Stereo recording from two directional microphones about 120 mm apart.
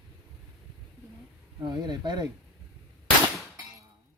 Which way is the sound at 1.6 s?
40° right (ahead or behind).